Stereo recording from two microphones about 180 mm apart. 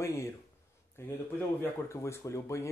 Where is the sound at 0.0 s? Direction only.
15° left (ahead or behind).